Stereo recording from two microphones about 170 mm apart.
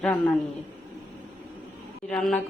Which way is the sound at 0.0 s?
10° left (ahead or behind).